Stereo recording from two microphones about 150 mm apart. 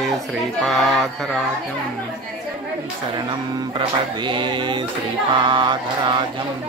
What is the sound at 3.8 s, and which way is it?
Speech, 30° right (ahead or behind).